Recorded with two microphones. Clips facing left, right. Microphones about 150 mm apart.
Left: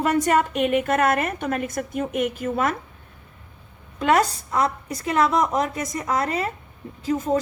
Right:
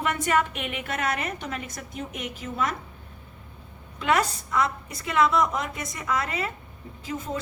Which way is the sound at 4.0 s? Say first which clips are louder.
Left 5 dB; 40° left (ahead or behind).